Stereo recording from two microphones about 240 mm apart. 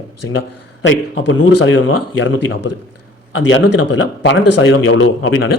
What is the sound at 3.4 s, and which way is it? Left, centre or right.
Speech, left.